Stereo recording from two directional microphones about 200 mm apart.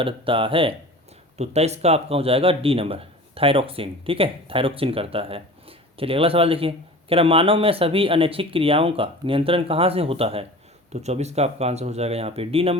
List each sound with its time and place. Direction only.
0.0 s a man's voice: 25° right (ahead or behind)